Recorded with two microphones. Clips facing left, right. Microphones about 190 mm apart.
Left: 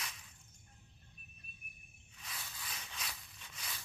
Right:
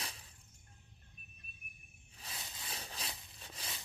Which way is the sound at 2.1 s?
30° right (ahead or behind).